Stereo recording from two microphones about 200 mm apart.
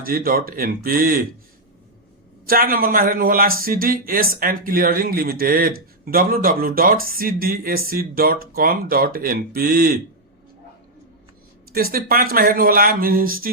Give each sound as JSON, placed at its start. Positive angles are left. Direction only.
{"t": 0.0, "sound": "speech", "side_deg": -45}
{"t": 2.5, "sound": "speech", "side_deg": -45}
{"t": 11.7, "sound": "speech", "side_deg": -45}